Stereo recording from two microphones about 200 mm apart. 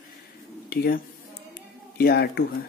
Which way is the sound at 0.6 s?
50° left (ahead or behind).